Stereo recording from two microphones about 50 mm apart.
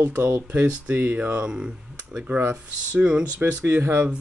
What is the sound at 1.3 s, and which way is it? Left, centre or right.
Speech, centre.